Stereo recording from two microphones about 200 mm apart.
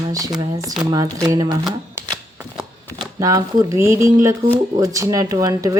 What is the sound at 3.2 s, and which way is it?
Speech, 15° right (ahead or behind).